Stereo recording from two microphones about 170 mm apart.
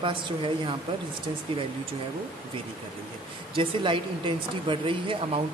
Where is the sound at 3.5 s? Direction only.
30° right (ahead or behind).